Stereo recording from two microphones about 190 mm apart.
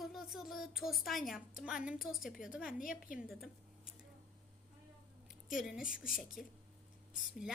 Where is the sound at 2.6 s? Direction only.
45° left (ahead or behind).